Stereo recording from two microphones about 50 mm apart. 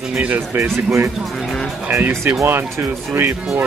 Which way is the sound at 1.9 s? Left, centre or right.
Right.